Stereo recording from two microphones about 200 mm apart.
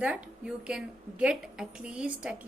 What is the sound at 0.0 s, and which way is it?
A woman's voice, 5° right (ahead or behind).